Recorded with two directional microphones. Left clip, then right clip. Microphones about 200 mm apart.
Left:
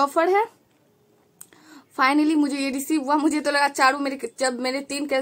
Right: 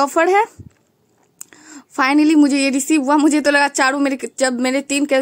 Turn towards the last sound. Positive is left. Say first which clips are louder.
# right 8 dB
turn(degrees=-40)  # may be behind; listen again after turning